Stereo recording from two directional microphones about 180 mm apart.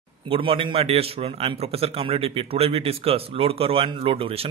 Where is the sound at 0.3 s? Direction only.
30° right (ahead or behind).